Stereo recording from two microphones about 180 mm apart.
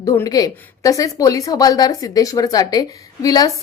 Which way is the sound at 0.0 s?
20° left (ahead or behind).